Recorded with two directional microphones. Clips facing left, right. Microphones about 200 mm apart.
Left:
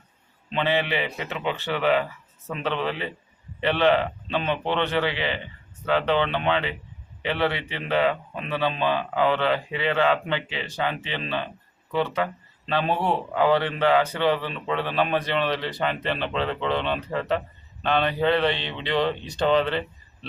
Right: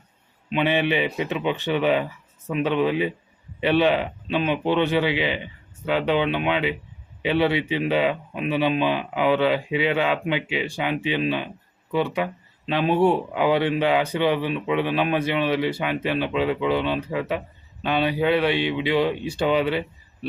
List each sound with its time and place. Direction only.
0.5 s speech: 15° right (ahead or behind)